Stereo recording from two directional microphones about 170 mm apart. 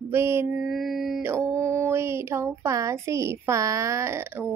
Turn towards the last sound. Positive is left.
turn(degrees=-15)  # may be behind; listen again after turning